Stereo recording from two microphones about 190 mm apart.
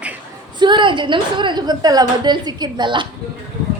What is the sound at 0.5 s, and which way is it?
A woman's voice, 25° right (ahead or behind).